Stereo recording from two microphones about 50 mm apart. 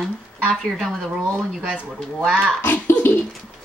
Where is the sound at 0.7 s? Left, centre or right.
Centre.